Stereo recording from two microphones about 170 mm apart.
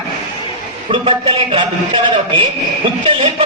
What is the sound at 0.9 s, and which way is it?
A man's voice, 35° right (ahead or behind).